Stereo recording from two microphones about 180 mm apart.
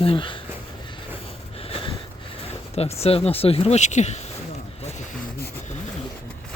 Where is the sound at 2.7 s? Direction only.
35° left (ahead or behind).